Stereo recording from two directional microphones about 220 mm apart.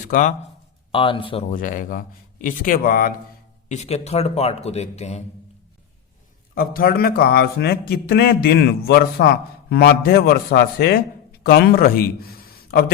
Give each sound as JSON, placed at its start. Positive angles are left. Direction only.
{"t": 0.1, "sound": "a man's voice", "side_deg": 35}
{"t": 0.9, "sound": "speech", "side_deg": 25}
{"t": 1.5, "sound": "a man's voice", "side_deg": 40}
{"t": 3.7, "sound": "a man's voice", "side_deg": 30}
{"t": 6.5, "sound": "a man's voice", "side_deg": 45}